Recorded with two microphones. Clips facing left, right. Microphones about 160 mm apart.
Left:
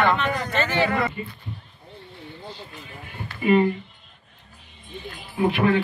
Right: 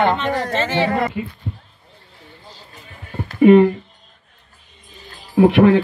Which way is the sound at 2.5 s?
40° right (ahead or behind).